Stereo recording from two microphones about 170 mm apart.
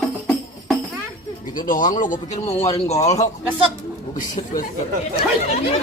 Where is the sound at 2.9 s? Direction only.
40° left (ahead or behind).